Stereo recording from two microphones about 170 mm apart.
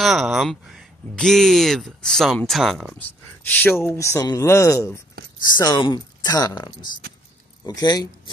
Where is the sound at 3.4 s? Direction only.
10° left (ahead or behind).